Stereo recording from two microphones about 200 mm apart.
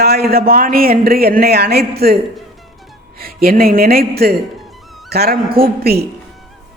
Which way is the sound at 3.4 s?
45° right (ahead or behind).